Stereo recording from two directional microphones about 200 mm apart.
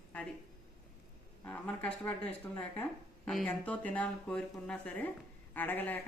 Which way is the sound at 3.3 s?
5° left (ahead or behind).